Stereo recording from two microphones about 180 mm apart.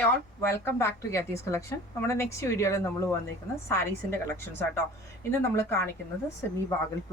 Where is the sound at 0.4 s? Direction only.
15° left (ahead or behind).